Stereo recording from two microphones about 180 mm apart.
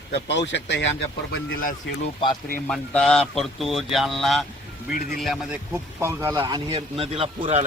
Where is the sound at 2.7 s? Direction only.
5° left (ahead or behind); by 6.4 s 15° right (ahead or behind).